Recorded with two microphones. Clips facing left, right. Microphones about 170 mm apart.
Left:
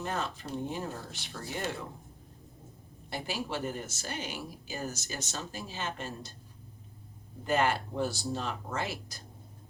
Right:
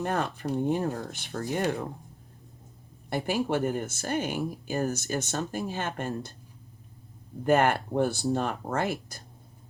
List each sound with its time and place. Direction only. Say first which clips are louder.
0.0 s speech: right 6 dB; 55° right (ahead or behind)
3.1 s speech: right 8 dB; 55° right (ahead or behind)
7.4 s speech: right 6 dB; 55° right (ahead or behind)